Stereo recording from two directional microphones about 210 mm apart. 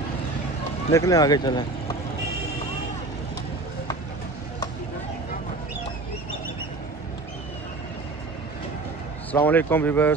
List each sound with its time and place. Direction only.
0.9 s speech: 15° left (ahead or behind)
9.3 s speech: 10° left (ahead or behind)